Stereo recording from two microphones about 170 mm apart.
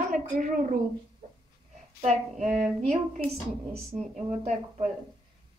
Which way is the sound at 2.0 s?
40° right (ahead or behind).